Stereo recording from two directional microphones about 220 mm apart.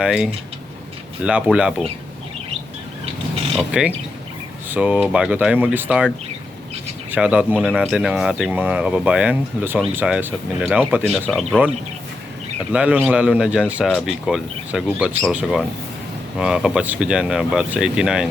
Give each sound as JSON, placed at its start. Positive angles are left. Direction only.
{"t": 0.0, "sound": "speech", "side_deg": -5}
{"t": 3.7, "sound": "speech", "side_deg": -5}
{"t": 7.1, "sound": "speech", "side_deg": -5}
{"t": 12.7, "sound": "speech", "side_deg": -5}